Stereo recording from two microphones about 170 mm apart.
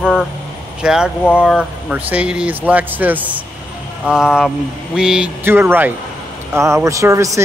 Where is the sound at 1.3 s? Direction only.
5° right (ahead or behind).